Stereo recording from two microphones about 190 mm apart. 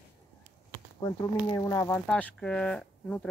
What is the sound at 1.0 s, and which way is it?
Speech, 15° left (ahead or behind).